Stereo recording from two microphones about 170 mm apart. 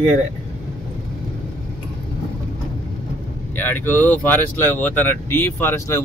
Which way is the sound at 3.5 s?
10° left (ahead or behind).